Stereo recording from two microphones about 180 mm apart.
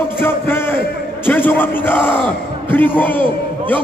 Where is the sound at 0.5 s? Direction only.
10° left (ahead or behind).